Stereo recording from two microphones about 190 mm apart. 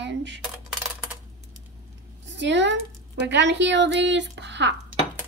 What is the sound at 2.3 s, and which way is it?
A child's voice, 70° right (ahead or behind).